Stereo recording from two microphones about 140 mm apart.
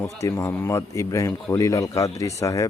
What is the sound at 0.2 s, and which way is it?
A man's voice, 20° left (ahead or behind).